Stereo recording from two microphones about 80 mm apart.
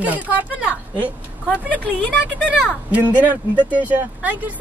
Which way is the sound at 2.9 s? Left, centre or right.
Centre.